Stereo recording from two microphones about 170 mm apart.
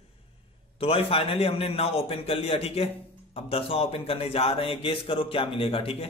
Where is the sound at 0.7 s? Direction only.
30° left (ahead or behind).